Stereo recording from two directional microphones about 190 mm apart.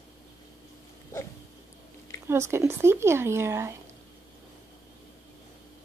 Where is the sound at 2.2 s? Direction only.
15° right (ahead or behind).